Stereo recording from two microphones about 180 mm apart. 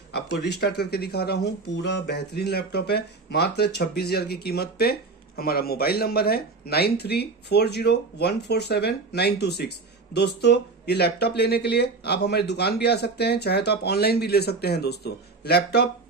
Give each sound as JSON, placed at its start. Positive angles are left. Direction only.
{"t": 0.1, "sound": "speech", "side_deg": 70}